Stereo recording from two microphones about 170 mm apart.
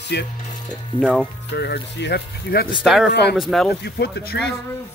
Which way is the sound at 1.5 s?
85° left.